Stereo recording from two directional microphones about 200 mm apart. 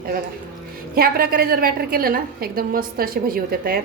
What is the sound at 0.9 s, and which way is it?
Speech, 45° right (ahead or behind).